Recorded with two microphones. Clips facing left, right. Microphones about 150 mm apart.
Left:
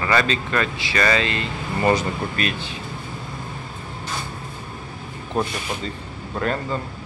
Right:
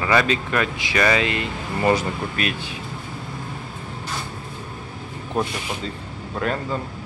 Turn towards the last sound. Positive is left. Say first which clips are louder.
# even
turn(degrees=-5)  # may be behind; listen again after turning